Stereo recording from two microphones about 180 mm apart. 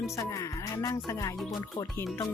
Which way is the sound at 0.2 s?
15° left (ahead or behind).